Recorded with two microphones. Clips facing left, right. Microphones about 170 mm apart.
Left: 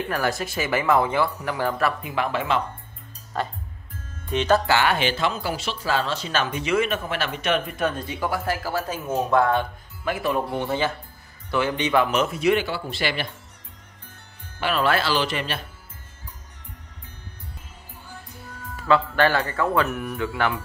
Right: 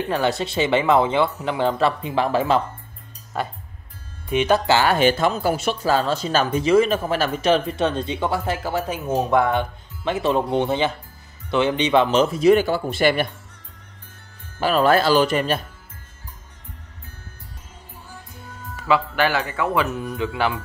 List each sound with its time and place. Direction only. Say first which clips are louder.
0.0 s speech: right 4 dB; 25° right (ahead or behind)
3.3 s a man's voice: right 1 dB; 15° right (ahead or behind)
4.6 s speech: right 4 dB; 35° right (ahead or behind); by 13.3 s 50° right (ahead or behind)
14.6 s speech: right 5 dB; 40° right (ahead or behind)
19.1 s a man's voice: even; 5° right (ahead or behind)
19.9 s speech: right 2 dB; 20° right (ahead or behind)